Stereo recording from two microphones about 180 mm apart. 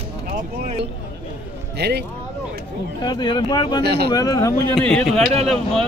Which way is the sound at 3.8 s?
65° right (ahead or behind).